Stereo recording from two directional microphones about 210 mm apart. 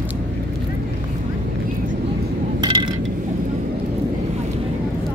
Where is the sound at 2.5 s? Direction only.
25° right (ahead or behind).